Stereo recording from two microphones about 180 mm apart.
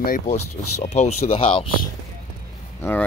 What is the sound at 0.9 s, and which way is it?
Speech, 40° left (ahead or behind).